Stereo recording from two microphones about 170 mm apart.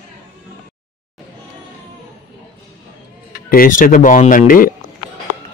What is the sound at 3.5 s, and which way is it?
Speech, 50° left (ahead or behind).